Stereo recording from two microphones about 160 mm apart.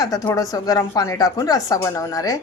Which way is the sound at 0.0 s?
25° left (ahead or behind).